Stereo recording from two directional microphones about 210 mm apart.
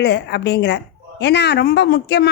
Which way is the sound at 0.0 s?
55° left (ahead or behind).